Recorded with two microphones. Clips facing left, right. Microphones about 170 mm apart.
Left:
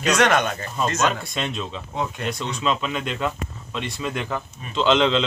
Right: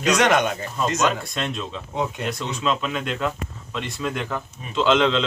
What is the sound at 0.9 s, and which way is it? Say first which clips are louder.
Speech: right 1 dB; centre (ahead or behind).